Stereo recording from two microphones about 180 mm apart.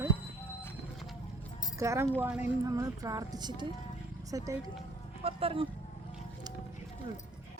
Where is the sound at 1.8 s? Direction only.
15° right (ahead or behind).